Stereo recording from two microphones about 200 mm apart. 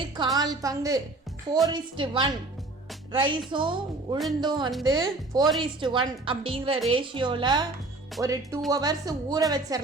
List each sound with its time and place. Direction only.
0.3 s a woman's voice: 20° right (ahead or behind)